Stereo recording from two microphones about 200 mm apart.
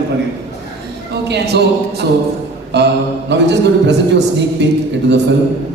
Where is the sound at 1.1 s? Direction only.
55° right (ahead or behind).